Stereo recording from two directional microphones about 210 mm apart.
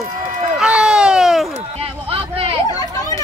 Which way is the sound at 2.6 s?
20° left (ahead or behind).